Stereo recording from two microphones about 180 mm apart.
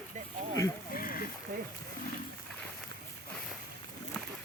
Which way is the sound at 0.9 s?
50° left (ahead or behind).